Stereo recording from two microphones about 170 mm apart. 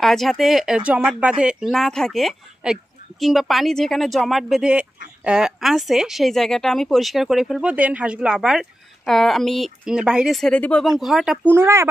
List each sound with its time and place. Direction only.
0.0 s speech: centre (ahead or behind)
11.5 s speech: 15° right (ahead or behind)